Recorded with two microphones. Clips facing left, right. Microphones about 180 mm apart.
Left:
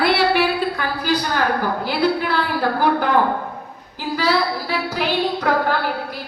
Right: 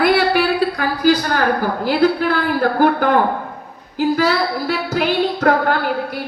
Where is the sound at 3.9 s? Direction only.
45° right (ahead or behind).